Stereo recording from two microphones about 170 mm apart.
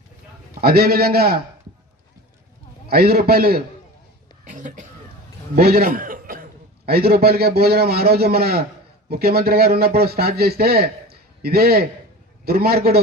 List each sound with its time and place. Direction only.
0.6 s speech: 65° right (ahead or behind)
2.9 s speech: 65° right (ahead or behind)
4.4 s a sound: 50° right (ahead or behind)
5.5 s a man's voice: 60° right (ahead or behind)